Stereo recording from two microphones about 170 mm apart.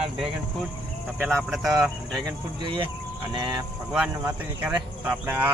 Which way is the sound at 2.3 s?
30° right (ahead or behind).